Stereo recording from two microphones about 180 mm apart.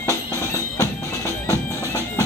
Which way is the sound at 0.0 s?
15° left (ahead or behind).